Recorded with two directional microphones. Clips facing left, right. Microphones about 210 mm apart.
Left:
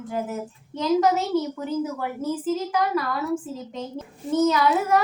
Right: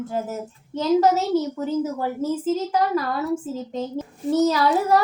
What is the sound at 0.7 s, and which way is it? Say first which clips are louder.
A woman's voice: right 2 dB; 35° right (ahead or behind).